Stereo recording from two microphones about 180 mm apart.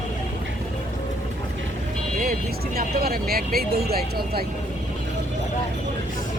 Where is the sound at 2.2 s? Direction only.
60° right (ahead or behind).